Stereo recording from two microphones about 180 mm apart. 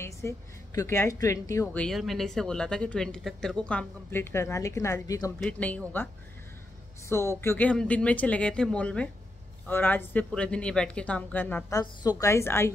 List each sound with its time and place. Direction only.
0.2 s speech: 15° left (ahead or behind)
1.8 s speech: centre (ahead or behind); by 5.3 s 20° left (ahead or behind)
5.4 s speech: 10° left (ahead or behind)
7.3 s speech: 10° left (ahead or behind)
11.8 s speech: 20° left (ahead or behind)